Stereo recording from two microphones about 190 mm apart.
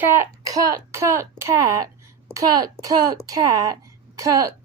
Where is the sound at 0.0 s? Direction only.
10° right (ahead or behind).